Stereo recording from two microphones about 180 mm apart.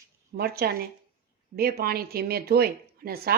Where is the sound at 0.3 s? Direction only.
60° right (ahead or behind).